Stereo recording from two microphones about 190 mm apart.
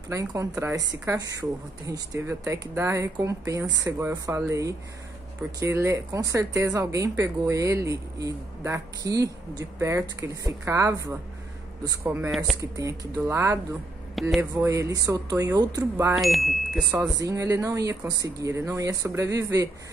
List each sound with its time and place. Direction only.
0.1 s speech: 15° right (ahead or behind)
16.2 s speech: centre (ahead or behind)
16.9 s speech: 15° right (ahead or behind)